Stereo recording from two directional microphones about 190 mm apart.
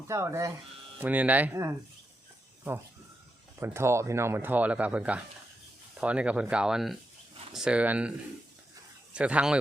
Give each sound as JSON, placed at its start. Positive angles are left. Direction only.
{"t": 0.1, "sound": "speech", "side_deg": -15}
{"t": 3.6, "sound": "speech", "side_deg": -15}
{"t": 9.1, "sound": "speech", "side_deg": -5}